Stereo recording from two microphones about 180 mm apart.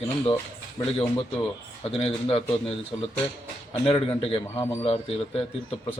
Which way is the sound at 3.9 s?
30° left (ahead or behind).